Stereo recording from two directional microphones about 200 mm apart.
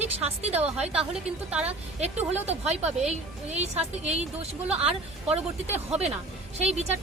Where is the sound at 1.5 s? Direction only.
5° right (ahead or behind).